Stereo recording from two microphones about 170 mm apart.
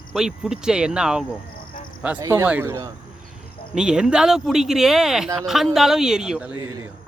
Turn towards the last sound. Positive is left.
turn(degrees=-5)  # may be behind; listen again after turning